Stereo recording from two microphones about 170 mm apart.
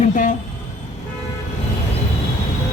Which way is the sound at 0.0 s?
45° left (ahead or behind).